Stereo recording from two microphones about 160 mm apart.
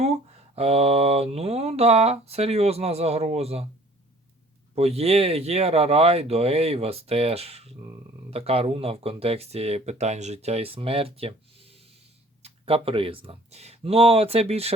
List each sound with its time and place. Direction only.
0.0 s speech: 40° right (ahead or behind)
4.7 s speech: 40° right (ahead or behind)